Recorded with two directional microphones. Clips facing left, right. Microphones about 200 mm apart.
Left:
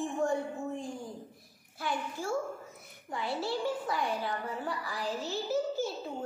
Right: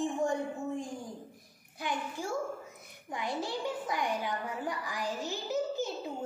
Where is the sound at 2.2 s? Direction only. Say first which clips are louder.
Left 1 dB; 15° right (ahead or behind).